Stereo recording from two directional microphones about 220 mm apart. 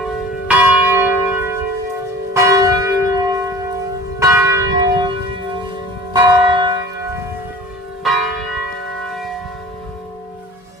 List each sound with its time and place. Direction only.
0.4 s church bell: 10° right (ahead or behind)
6.1 s church bell: 20° right (ahead or behind)
8.0 s church bell: centre (ahead or behind)